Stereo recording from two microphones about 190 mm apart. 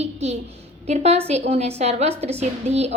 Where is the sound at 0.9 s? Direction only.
35° right (ahead or behind).